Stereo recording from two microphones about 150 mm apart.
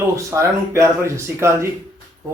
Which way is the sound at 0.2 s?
20° right (ahead or behind).